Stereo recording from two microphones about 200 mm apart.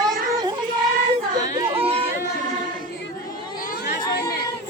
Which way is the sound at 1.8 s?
30° right (ahead or behind).